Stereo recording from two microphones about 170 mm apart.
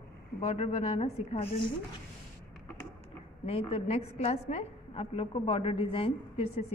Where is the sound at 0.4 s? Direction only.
40° left (ahead or behind).